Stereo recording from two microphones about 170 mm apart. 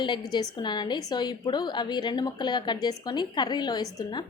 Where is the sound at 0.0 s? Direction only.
25° left (ahead or behind).